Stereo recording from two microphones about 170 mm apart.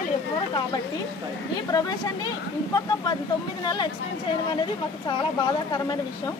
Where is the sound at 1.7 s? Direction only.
20° left (ahead or behind).